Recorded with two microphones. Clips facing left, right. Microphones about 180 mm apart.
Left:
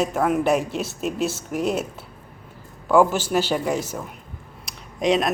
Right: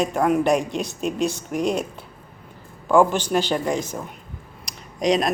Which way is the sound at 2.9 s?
5° left (ahead or behind).